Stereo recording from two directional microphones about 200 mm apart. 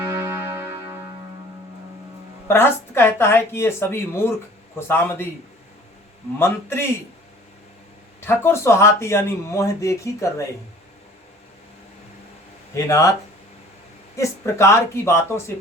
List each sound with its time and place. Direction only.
0.0 s music: 15° right (ahead or behind)
2.5 s speech: 10° left (ahead or behind)
6.4 s speech: 10° left (ahead or behind)
8.2 s speech: 10° left (ahead or behind)
12.7 s speech: 15° left (ahead or behind)
14.2 s speech: 15° left (ahead or behind)